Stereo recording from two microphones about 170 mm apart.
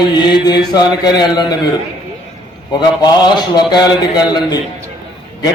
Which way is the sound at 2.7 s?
25° left (ahead or behind).